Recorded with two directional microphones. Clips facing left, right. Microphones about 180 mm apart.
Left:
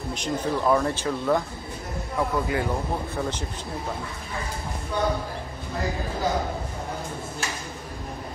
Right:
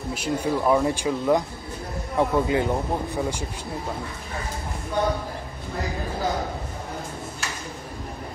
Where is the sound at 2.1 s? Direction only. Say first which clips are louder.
Right 4 dB; 25° right (ahead or behind).